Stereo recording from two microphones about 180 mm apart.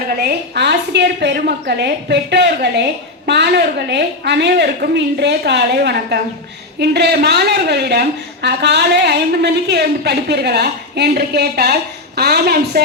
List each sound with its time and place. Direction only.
0.2 s a woman's voice: 65° right (ahead or behind)